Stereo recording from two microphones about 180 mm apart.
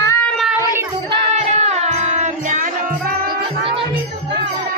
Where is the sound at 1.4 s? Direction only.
35° right (ahead or behind).